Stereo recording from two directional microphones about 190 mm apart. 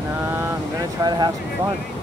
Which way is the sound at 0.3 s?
20° right (ahead or behind).